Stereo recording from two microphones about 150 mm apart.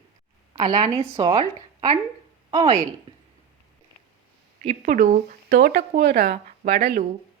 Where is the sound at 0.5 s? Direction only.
25° right (ahead or behind).